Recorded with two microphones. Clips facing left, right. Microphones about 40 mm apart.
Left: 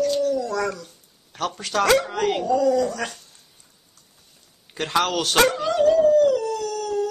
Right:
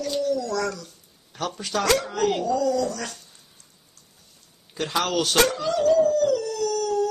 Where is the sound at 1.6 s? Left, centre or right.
Centre.